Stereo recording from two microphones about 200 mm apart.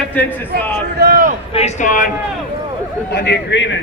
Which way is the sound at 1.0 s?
45° right (ahead or behind).